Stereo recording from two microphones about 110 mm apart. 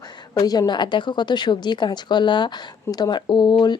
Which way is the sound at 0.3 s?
35° left (ahead or behind).